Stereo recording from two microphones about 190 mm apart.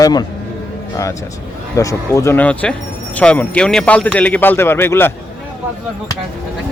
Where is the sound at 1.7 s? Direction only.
15° left (ahead or behind).